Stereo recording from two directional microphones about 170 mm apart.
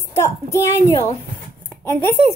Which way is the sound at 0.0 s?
15° left (ahead or behind).